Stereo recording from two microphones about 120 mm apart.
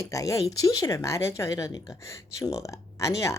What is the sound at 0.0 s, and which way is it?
A woman's voice, 25° left (ahead or behind).